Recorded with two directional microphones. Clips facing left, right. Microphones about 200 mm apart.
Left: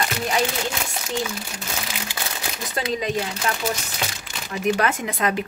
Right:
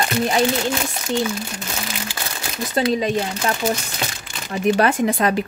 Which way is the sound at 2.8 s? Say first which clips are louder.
Right 5 dB; 30° right (ahead or behind).